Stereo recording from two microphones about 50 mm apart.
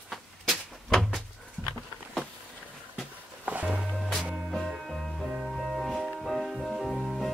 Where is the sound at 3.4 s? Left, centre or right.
Right.